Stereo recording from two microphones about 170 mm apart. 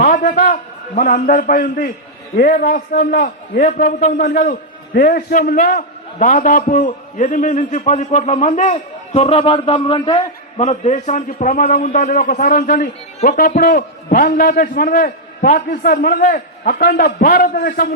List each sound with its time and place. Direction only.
0.0 s a man's voice: 50° left (ahead or behind); by 10.2 s 30° left (ahead or behind)
10.6 s a man's voice: 40° left (ahead or behind); by 17.7 s 65° left (ahead or behind)